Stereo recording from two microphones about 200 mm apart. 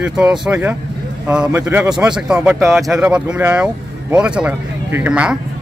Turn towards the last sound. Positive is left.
turn(degrees=-5)  # may be behind; listen again after turning